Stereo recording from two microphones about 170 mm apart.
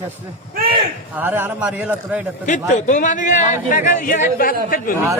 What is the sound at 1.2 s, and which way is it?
Speech, 10° right (ahead or behind).